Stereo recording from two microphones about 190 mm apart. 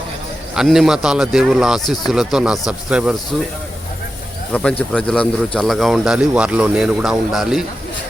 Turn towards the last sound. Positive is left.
turn(degrees=0)  # may be behind; listen again after turning